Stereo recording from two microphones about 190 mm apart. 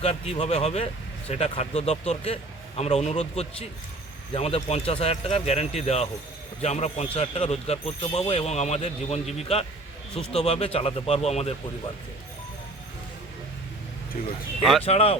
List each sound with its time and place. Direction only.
0.0 s speech: 35° left (ahead or behind)
14.2 s speech: 45° left (ahead or behind)
14.6 s speech: centre (ahead or behind)
14.8 s speech: 30° left (ahead or behind)